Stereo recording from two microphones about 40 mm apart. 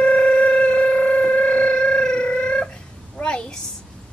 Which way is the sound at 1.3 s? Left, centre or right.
Left.